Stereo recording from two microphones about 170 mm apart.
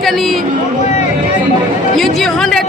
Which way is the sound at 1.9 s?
Centre (ahead or behind).